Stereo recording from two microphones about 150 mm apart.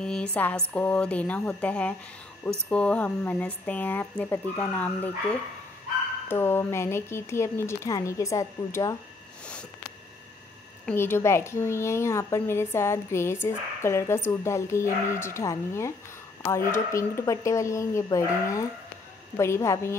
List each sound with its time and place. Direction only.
0.0 s speech: 5° left (ahead or behind); by 8.9 s 20° left (ahead or behind)
10.9 s speech: 15° left (ahead or behind)